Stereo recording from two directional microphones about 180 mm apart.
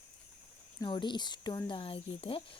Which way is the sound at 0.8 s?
25° left (ahead or behind).